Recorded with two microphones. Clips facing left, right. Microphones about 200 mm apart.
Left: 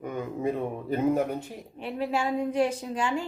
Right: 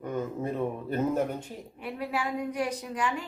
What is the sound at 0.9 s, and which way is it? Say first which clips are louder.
Speech: left 4 dB; 10° left (ahead or behind).